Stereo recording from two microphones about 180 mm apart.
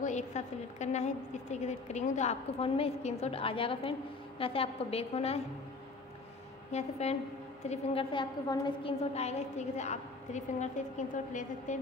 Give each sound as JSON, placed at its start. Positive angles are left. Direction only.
{"t": 0.0, "sound": "a woman's voice", "side_deg": 40}
{"t": 6.7, "sound": "a woman's voice", "side_deg": 35}